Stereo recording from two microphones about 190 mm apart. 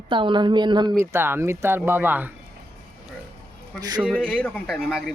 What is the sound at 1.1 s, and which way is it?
Speech, 10° right (ahead or behind).